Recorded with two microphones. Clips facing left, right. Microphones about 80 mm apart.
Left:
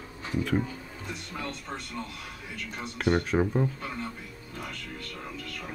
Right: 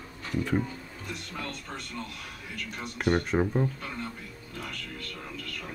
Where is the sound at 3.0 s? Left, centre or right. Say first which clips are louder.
Even; centre.